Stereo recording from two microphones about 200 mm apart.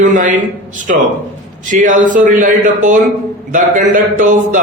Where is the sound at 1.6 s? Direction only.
40° right (ahead or behind).